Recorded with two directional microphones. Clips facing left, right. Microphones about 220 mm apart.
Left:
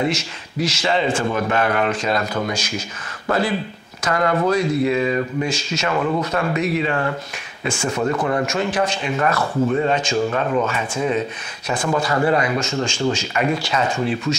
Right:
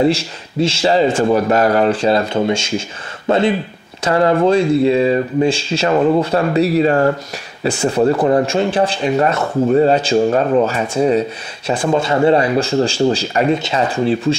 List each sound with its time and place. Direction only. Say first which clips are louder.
0.0 s speech: right 7 dB; 30° right (ahead or behind)